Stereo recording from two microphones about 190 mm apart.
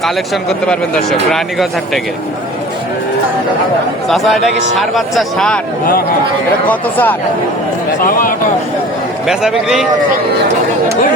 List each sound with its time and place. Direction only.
1.3 s speech: centre (ahead or behind)
4.1 s speech: centre (ahead or behind)
6.7 s speech: 10° left (ahead or behind)
9.2 s speech: 5° right (ahead or behind)